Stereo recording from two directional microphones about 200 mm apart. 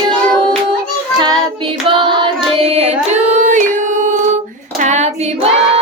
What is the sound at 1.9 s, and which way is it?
Singing, 25° right (ahead or behind).